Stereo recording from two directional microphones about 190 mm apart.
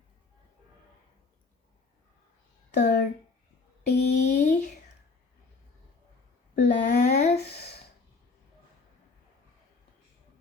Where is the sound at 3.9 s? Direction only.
35° left (ahead or behind).